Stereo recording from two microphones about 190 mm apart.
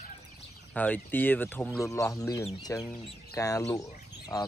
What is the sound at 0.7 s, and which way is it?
Speech, 10° left (ahead or behind).